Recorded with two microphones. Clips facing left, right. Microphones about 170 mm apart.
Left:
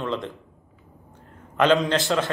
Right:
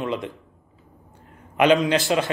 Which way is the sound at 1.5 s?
15° right (ahead or behind).